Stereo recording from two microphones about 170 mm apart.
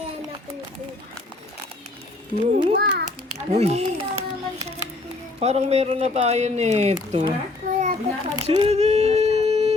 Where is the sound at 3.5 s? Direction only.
40° right (ahead or behind).